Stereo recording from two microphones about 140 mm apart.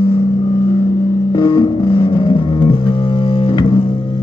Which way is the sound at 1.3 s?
35° left (ahead or behind).